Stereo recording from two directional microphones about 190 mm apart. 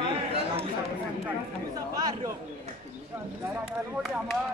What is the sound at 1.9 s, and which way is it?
Chatter, 20° right (ahead or behind).